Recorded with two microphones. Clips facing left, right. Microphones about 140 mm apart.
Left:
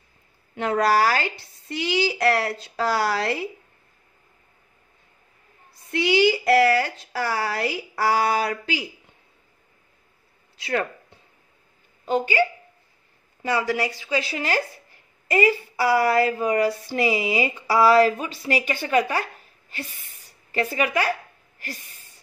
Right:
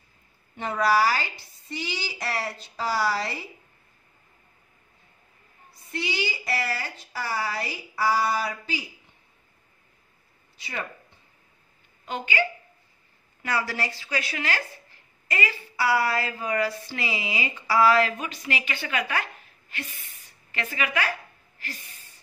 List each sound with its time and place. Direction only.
0.6 s speech: 70° left (ahead or behind)
5.9 s speech: 70° left (ahead or behind)
10.6 s speech: 65° left (ahead or behind)
13.5 s speech: 20° left (ahead or behind)
14.2 s speech: 35° left (ahead or behind)
20.5 s speech: 35° left (ahead or behind)